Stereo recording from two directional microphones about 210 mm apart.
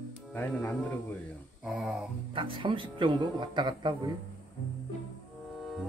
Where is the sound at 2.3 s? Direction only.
25° right (ahead or behind).